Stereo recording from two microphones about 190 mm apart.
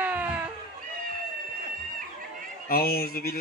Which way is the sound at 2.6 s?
55° left (ahead or behind).